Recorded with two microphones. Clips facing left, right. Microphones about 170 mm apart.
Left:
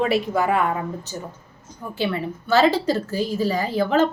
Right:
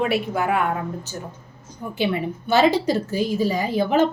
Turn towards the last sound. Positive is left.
turn(degrees=-15)  # may be behind; listen again after turning